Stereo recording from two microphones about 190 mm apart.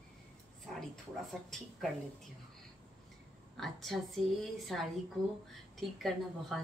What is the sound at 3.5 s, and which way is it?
Speech, centre (ahead or behind).